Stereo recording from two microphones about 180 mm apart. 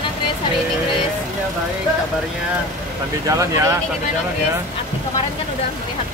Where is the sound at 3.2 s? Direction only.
20° right (ahead or behind).